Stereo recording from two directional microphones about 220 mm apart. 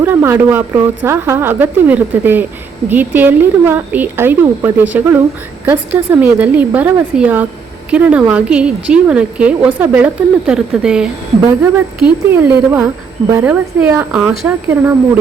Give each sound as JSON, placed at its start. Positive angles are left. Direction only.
{"t": 0.0, "sound": "a woman's voice", "side_deg": -10}